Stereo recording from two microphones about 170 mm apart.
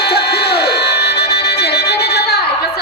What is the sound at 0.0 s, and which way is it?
Music, 70° left (ahead or behind).